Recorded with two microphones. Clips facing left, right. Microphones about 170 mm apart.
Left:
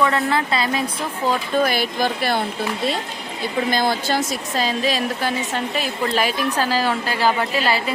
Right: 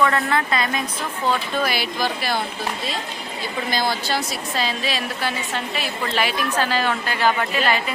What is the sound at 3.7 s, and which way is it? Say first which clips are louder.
A woman's voice: left 1 dB; 50° left (ahead or behind).